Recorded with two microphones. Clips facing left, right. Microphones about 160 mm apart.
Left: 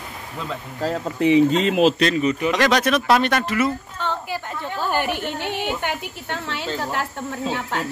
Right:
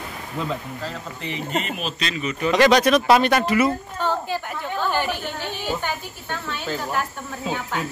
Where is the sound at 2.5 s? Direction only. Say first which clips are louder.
Right 8 dB; centre (ahead or behind).